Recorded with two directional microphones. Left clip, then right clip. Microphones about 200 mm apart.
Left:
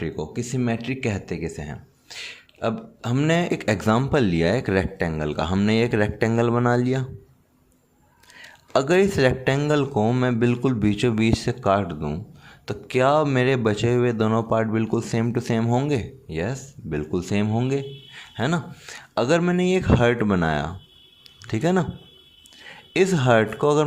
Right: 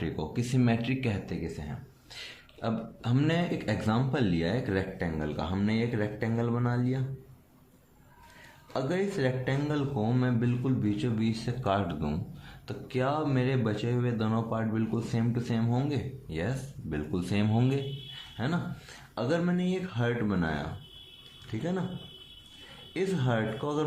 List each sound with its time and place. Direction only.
0.0 s speech: 30° left (ahead or behind); by 7.0 s 50° left (ahead or behind)
8.4 s speech: 50° left (ahead or behind); by 12.2 s 25° left (ahead or behind)
12.6 s speech: 45° left (ahead or behind); by 17.8 s 30° left (ahead or behind)
18.3 s speech: 45° left (ahead or behind)
22.9 s speech: 50° left (ahead or behind)